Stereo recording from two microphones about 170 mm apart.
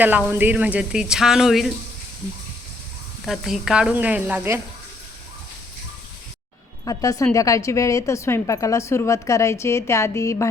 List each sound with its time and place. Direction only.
0.0 s speech: 10° right (ahead or behind)
3.2 s speech: centre (ahead or behind)
6.8 s a woman's voice: 20° left (ahead or behind)